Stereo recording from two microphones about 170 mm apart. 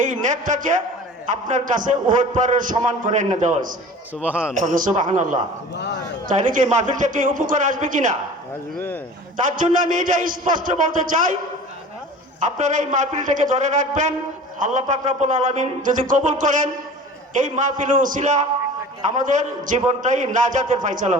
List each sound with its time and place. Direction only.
0.0 s a man's voice: 50° right (ahead or behind)
4.1 s a man's voice: 10° right (ahead or behind)
4.5 s a man's voice: 50° right (ahead or behind)
5.7 s speech: 90° left
6.2 s a man's voice: 50° right (ahead or behind)
9.6 s a man's voice: 50° right (ahead or behind)
12.4 s a man's voice: 45° right (ahead or behind)